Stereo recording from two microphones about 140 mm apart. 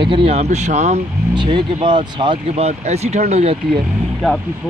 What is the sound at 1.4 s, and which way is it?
Speech, 35° right (ahead or behind).